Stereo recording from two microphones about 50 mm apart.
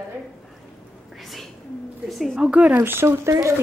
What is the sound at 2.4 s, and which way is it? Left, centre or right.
Speech, right.